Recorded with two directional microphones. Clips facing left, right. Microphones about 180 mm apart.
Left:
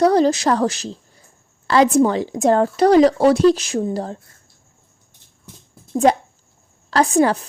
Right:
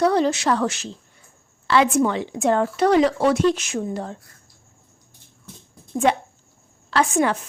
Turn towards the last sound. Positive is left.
turn(degrees=35)  # may be behind; listen again after turning